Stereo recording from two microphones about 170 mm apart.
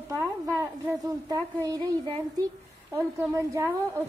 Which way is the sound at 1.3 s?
20° right (ahead or behind).